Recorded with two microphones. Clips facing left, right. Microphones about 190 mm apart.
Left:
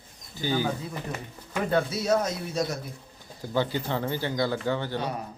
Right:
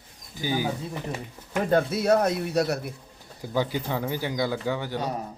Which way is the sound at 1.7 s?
55° right (ahead or behind).